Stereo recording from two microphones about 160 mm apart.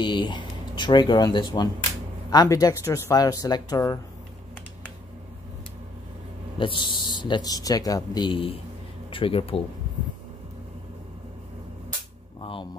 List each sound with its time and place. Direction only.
0.0 s speech: 30° left (ahead or behind)
6.6 s speech: 30° left (ahead or behind)
12.4 s music: 30° left (ahead or behind)